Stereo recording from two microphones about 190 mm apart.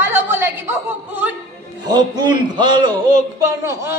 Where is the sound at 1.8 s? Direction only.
20° right (ahead or behind).